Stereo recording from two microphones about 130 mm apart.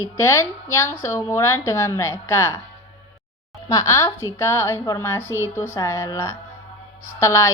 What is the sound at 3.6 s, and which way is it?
A woman's voice, 25° left (ahead or behind).